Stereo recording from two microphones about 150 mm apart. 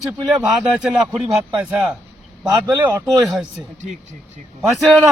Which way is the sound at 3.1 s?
Centre (ahead or behind).